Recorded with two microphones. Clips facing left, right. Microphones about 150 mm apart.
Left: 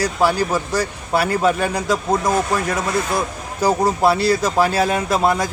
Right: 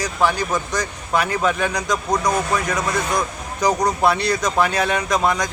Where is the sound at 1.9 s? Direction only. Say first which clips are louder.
Left 2 dB; 25° left (ahead or behind).